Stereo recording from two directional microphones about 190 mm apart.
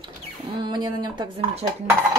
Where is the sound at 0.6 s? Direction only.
20° right (ahead or behind).